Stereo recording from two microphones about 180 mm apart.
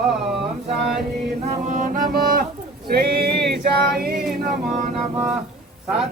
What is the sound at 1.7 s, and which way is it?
Music, 50° right (ahead or behind).